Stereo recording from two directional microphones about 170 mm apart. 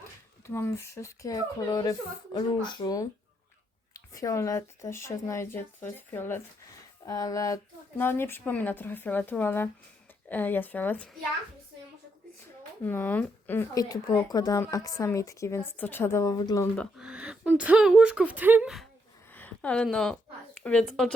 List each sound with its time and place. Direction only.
0.4 s speech: 15° left (ahead or behind)
4.1 s speech: 20° left (ahead or behind)
12.8 s speech: 10° left (ahead or behind)
17.0 s speech: 5° right (ahead or behind)
19.3 s a sound: 10° left (ahead or behind)
20.7 s speech: 5° left (ahead or behind)